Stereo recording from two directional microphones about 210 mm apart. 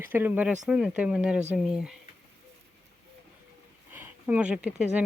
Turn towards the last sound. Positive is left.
turn(degrees=-5)  # may be behind; listen again after turning